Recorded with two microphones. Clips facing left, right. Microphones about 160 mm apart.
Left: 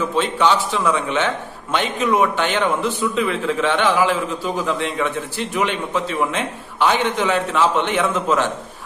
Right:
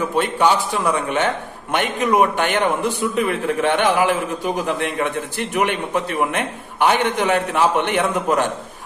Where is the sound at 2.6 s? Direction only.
15° right (ahead or behind).